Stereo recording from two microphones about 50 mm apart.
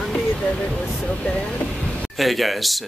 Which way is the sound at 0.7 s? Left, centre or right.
Left.